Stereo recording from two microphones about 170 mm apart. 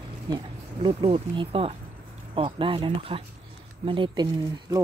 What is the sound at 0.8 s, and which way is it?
Speech, 30° right (ahead or behind).